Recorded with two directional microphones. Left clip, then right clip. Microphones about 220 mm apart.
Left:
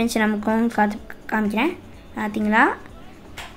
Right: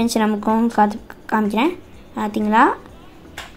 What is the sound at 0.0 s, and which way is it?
A woman's voice, 10° right (ahead or behind).